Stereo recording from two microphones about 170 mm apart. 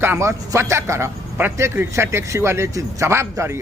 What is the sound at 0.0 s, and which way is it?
A man's voice, 15° right (ahead or behind).